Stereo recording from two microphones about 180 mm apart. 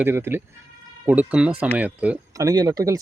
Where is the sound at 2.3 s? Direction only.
20° right (ahead or behind).